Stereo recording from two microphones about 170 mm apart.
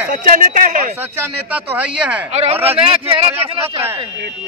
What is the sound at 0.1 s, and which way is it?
Speech, 50° right (ahead or behind).